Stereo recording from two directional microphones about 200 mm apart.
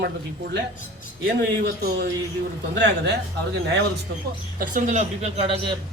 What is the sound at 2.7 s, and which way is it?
Speech, 60° right (ahead or behind).